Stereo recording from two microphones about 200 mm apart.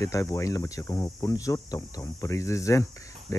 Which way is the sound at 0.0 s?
15° left (ahead or behind).